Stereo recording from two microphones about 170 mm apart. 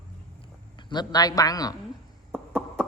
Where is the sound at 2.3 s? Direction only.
Centre (ahead or behind).